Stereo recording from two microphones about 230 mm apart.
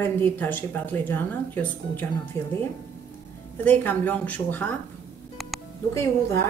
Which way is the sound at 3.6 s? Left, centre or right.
Centre.